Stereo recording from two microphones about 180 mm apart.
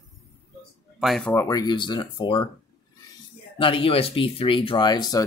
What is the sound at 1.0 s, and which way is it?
Speech, centre (ahead or behind).